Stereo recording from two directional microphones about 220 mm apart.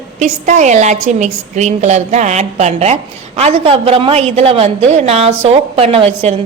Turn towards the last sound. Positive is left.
turn(degrees=-25)  # may be behind; listen again after turning